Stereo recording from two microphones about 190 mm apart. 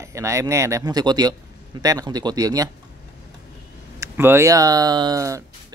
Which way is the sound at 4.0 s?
15° right (ahead or behind).